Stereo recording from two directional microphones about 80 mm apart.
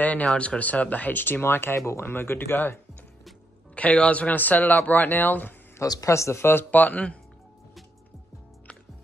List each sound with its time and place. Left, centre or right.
0.0 s speech: centre
3.7 s speech: centre
5.9 s speech: left; by 7.2 s centre